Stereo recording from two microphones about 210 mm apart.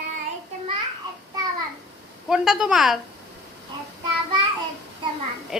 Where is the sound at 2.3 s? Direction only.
5° right (ahead or behind).